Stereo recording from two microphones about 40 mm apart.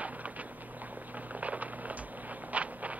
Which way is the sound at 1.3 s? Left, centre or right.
Right.